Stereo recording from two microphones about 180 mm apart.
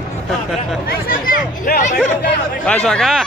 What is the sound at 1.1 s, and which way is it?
Speech, 50° left (ahead or behind).